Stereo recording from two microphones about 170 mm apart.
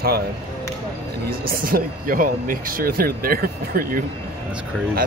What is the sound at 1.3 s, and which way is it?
Speech, 60° right (ahead or behind).